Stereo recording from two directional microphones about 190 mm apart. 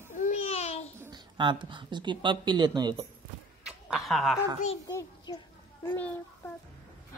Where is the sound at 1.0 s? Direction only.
20° right (ahead or behind).